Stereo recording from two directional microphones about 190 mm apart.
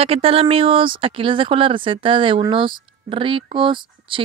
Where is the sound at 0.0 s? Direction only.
30° right (ahead or behind).